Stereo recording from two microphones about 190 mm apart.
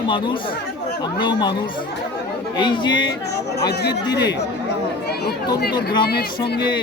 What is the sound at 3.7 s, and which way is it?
Speech, 60° left (ahead or behind).